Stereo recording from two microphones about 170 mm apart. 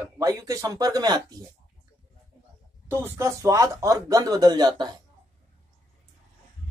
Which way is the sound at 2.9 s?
15° right (ahead or behind).